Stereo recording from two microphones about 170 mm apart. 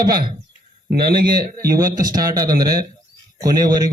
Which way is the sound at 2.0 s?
20° right (ahead or behind).